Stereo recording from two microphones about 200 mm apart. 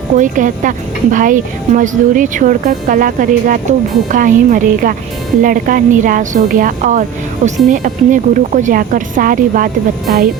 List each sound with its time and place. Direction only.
0.2 s a woman's voice: 40° right (ahead or behind)